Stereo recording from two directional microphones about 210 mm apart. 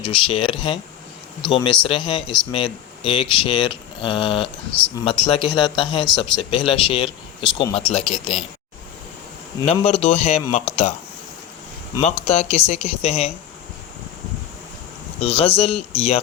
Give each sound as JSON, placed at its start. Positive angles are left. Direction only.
{"t": 0.0, "sound": "speech", "side_deg": 25}
{"t": 9.6, "sound": "speech", "side_deg": 30}
{"t": 11.9, "sound": "speech", "side_deg": 25}
{"t": 15.2, "sound": "speech", "side_deg": 30}